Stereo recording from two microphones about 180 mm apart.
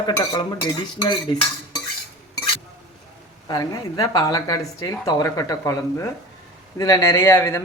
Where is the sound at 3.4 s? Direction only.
20° left (ahead or behind).